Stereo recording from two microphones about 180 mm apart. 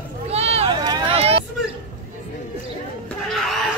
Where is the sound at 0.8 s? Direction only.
25° right (ahead or behind).